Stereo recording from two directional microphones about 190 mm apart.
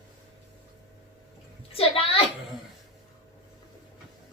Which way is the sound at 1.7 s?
30° left (ahead or behind).